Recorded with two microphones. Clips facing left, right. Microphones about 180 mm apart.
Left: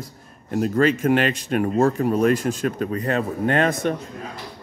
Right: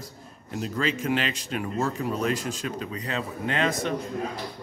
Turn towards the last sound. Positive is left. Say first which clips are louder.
# left 6 dB
turn(degrees=55)  # may be behind; listen again after turning